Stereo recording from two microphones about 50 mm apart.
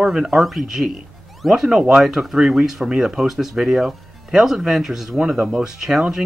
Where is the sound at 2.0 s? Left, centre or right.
Centre.